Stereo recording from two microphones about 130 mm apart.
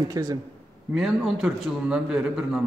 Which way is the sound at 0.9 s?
Centre (ahead or behind).